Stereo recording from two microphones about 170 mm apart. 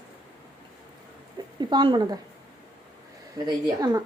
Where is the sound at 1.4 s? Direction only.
25° right (ahead or behind).